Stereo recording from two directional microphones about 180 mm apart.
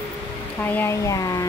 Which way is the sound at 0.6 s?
10° left (ahead or behind).